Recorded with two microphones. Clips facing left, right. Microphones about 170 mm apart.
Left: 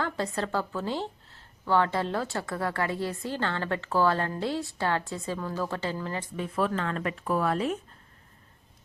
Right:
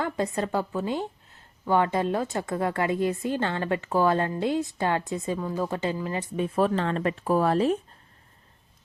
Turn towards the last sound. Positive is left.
turn(degrees=-30)  # may be behind; listen again after turning